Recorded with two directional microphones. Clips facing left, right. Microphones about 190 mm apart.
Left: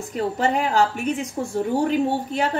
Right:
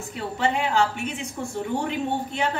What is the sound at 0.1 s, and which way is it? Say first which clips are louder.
A woman's voice: left 4 dB; 40° left (ahead or behind).